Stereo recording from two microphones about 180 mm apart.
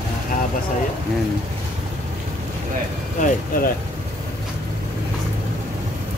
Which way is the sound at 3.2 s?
55° left (ahead or behind).